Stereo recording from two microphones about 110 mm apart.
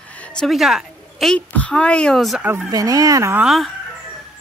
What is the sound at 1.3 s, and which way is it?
Speech, 10° left (ahead or behind).